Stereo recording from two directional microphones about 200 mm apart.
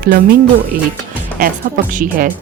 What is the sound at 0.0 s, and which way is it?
Speech, 50° right (ahead or behind).